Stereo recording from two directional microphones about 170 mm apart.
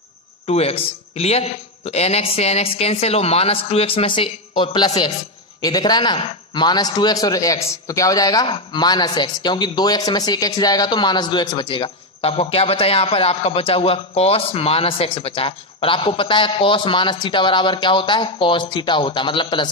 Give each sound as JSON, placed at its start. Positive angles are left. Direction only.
{"t": 0.5, "sound": "a man's voice", "side_deg": 35}